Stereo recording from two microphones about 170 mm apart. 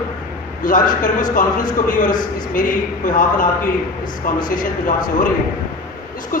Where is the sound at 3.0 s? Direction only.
50° left (ahead or behind).